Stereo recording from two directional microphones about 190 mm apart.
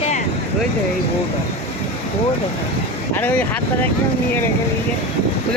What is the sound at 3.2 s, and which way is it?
Speech, 10° left (ahead or behind).